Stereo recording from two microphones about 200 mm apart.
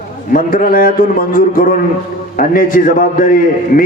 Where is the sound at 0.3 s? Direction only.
45° left (ahead or behind).